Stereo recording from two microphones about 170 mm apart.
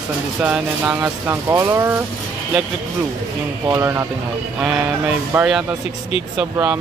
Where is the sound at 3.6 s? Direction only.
15° right (ahead or behind).